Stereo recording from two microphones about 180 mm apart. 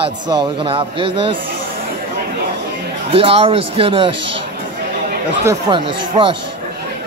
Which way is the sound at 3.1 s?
30° right (ahead or behind).